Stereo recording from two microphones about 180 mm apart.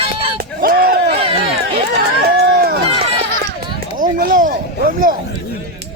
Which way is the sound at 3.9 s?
50° right (ahead or behind).